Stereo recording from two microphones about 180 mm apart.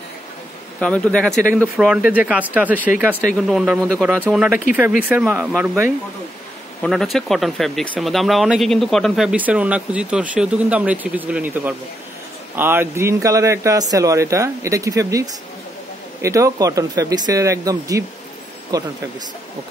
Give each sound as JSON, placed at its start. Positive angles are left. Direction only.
{"t": 0.7, "sound": "speech", "side_deg": 5}